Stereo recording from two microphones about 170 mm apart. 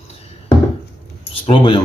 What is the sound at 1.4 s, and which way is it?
Speech, 30° left (ahead or behind).